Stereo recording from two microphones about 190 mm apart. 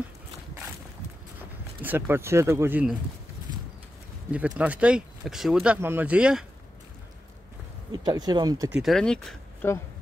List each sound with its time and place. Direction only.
1.8 s speech: 10° right (ahead or behind)
4.3 s speech: 5° right (ahead or behind)
7.9 s speech: 20° right (ahead or behind)
8.7 s speech: centre (ahead or behind)